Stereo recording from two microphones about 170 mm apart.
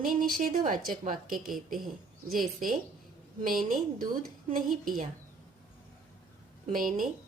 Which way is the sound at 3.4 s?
55° right (ahead or behind).